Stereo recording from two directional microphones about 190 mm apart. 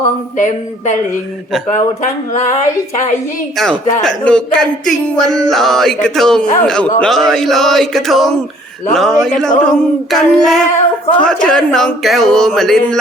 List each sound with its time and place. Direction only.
0.3 s speech: 40° left (ahead or behind)
2.3 s speech: 40° left (ahead or behind)
4.0 s speech: 5° left (ahead or behind)